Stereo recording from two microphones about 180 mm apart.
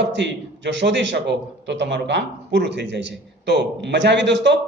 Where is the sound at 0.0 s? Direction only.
80° right.